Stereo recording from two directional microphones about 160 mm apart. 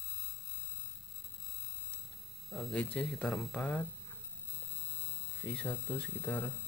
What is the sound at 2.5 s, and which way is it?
Speech, 10° left (ahead or behind).